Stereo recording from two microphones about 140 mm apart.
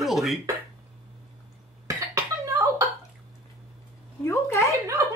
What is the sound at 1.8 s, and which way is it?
Cough, 25° right (ahead or behind).